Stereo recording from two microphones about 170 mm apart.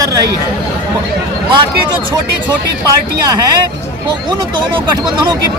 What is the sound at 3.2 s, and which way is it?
Speech, 20° right (ahead or behind).